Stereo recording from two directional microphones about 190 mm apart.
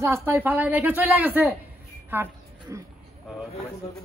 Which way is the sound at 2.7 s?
15° right (ahead or behind).